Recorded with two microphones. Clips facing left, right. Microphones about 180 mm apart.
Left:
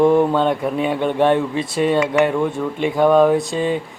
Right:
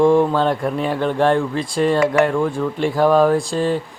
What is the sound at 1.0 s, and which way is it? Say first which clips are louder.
Speech: even; 20° left (ahead or behind).